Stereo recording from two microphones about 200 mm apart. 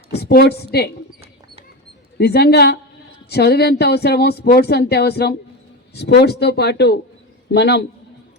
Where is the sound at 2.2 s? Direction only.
55° left (ahead or behind).